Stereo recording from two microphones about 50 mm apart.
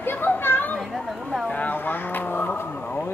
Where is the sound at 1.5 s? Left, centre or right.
Left.